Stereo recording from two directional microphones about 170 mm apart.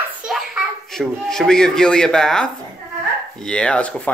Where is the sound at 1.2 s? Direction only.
5° left (ahead or behind).